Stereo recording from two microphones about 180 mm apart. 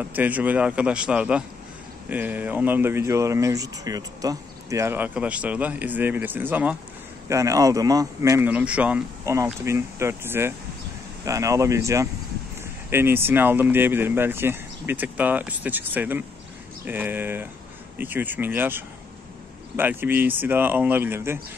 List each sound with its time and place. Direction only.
0.0 s speech: 10° right (ahead or behind)